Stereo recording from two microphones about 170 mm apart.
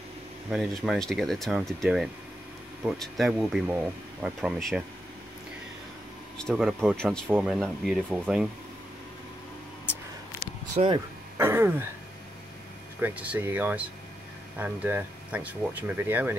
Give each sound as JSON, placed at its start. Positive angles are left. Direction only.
{"t": 0.5, "sound": "speech", "side_deg": 0}
{"t": 6.3, "sound": "speech", "side_deg": 0}
{"t": 10.8, "sound": "speech", "side_deg": -40}
{"t": 11.3, "sound": "throat clearing", "side_deg": -15}
{"t": 13.0, "sound": "speech", "side_deg": -10}